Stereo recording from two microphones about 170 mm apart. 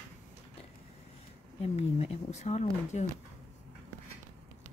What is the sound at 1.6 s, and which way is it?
Speech, 40° left (ahead or behind).